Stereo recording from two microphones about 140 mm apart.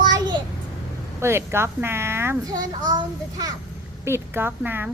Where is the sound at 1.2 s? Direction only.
20° right (ahead or behind).